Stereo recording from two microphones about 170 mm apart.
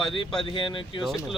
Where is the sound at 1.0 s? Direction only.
Centre (ahead or behind).